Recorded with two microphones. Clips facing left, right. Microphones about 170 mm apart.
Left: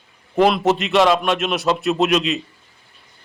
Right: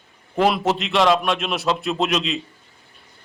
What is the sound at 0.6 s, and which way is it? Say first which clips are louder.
A man's voice: left 3 dB; centre (ahead or behind).